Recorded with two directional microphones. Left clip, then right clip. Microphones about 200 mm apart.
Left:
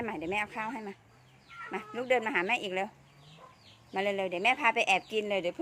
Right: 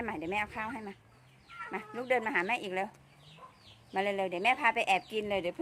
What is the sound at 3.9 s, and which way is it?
Speech, 5° left (ahead or behind).